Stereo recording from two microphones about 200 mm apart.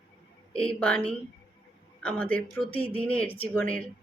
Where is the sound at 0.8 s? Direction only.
5° left (ahead or behind).